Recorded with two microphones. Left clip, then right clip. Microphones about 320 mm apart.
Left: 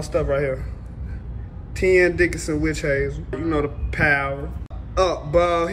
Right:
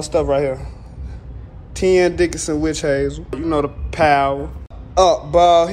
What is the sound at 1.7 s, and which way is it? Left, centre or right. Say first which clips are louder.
Speech: right 2 dB; centre.